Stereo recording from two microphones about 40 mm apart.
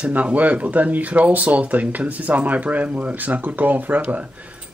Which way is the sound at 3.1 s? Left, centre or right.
Right.